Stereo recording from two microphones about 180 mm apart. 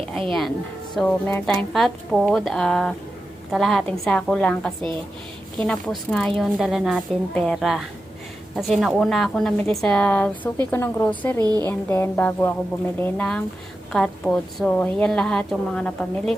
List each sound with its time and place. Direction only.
0.3 s a woman's voice: centre (ahead or behind)
10.7 s music: 15° left (ahead or behind)
11.3 s speech: 20° right (ahead or behind)
11.6 s music: 15° left (ahead or behind)
13.9 s a woman's voice: 5° left (ahead or behind)